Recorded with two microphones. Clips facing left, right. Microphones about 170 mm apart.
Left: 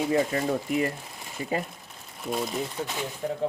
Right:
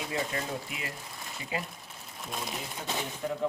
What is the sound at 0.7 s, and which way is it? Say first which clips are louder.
Speech: left 14 dB; 45° left (ahead or behind).